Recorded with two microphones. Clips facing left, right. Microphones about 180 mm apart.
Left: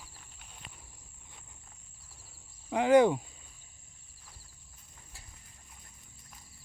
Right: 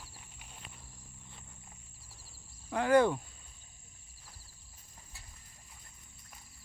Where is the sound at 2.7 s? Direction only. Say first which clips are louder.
Left 3 dB; 15° left (ahead or behind).